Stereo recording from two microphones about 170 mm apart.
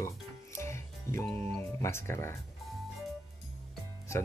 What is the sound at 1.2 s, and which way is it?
Speech, 10° left (ahead or behind).